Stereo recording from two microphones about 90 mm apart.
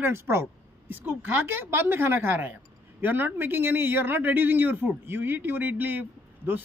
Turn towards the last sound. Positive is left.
turn(degrees=-20)  # may be behind; listen again after turning